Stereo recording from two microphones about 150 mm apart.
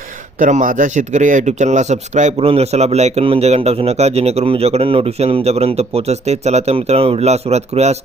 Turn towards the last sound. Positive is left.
turn(degrees=-45)  # may be behind; listen again after turning